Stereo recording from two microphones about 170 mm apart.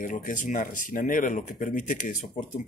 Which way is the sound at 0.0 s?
50° left (ahead or behind).